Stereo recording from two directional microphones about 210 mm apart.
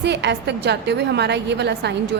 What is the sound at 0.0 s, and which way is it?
A woman's voice, 55° right (ahead or behind).